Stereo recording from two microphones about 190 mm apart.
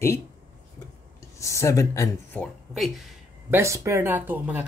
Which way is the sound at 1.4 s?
15° left (ahead or behind).